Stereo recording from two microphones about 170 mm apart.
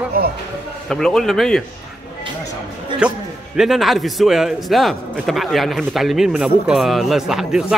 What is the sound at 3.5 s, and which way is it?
A man's voice, centre (ahead or behind).